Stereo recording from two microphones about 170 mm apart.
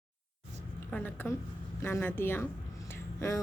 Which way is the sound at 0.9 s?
10° left (ahead or behind).